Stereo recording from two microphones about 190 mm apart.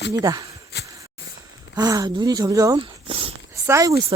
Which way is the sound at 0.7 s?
65° left (ahead or behind).